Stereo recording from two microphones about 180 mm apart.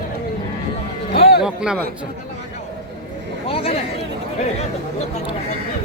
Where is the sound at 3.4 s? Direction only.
30° left (ahead or behind).